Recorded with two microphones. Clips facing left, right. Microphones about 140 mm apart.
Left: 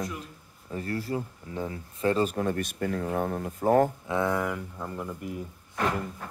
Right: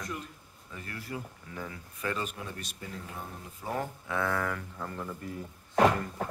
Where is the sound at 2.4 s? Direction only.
50° left (ahead or behind).